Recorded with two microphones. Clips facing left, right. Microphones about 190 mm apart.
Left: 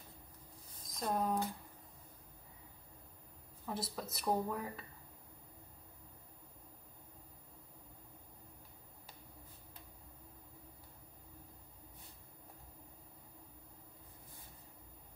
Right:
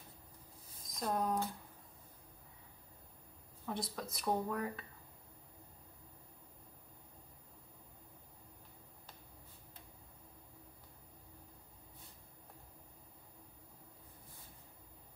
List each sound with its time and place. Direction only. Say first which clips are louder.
0.9 s speech: even; centre (ahead or behind)
3.6 s speech: even; 5° left (ahead or behind)